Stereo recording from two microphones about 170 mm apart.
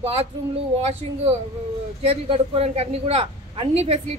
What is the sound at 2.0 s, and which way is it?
A woman's voice, 35° right (ahead or behind).